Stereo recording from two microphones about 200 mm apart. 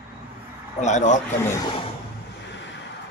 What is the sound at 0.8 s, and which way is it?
Speech, 35° left (ahead or behind).